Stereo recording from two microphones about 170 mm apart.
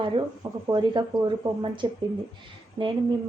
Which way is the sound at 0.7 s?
25° right (ahead or behind).